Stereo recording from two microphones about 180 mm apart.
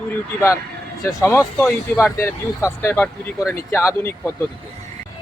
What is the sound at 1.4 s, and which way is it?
Speech, centre (ahead or behind).